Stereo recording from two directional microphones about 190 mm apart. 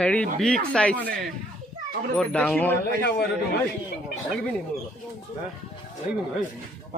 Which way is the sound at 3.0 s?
55° left (ahead or behind).